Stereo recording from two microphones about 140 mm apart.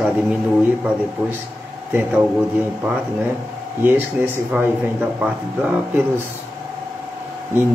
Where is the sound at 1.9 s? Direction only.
15° right (ahead or behind).